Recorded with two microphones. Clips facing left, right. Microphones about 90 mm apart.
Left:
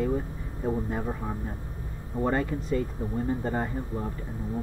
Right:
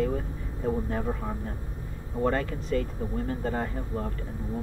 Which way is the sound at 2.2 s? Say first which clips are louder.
Even; 15° left (ahead or behind).